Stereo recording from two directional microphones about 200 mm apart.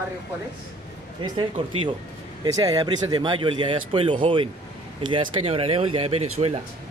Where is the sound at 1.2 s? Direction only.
25° right (ahead or behind).